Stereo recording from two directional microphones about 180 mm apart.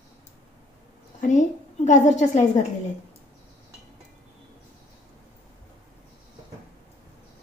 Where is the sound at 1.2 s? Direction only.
45° left (ahead or behind).